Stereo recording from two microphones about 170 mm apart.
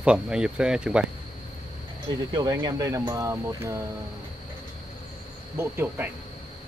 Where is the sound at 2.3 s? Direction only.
25° right (ahead or behind).